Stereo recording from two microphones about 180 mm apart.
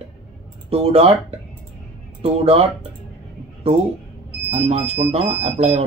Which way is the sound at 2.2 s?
35° right (ahead or behind).